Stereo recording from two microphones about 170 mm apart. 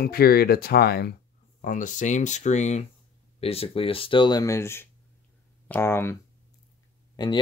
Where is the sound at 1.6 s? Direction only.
50° left (ahead or behind); by 6.1 s 15° left (ahead or behind).